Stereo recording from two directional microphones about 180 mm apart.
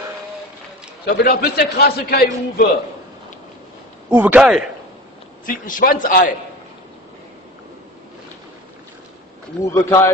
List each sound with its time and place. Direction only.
1.0 s a man's voice: 55° left (ahead or behind)
4.1 s speech: 10° right (ahead or behind)
5.5 s a man's voice: 50° left (ahead or behind)
9.8 s speech: 15° left (ahead or behind)